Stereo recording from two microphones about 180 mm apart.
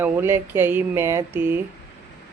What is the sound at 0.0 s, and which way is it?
Speech, 15° right (ahead or behind).